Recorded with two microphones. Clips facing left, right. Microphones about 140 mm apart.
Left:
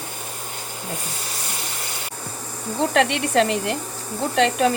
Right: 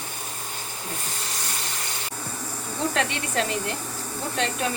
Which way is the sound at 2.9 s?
75° left (ahead or behind).